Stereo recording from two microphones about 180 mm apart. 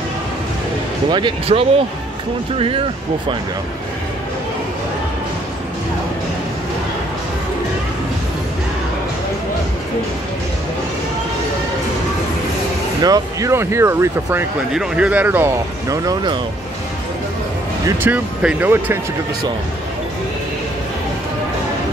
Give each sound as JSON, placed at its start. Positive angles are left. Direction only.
{"t": 1.1, "sound": "speech", "side_deg": -30}
{"t": 13.0, "sound": "speech", "side_deg": -20}
{"t": 17.8, "sound": "speech", "side_deg": -10}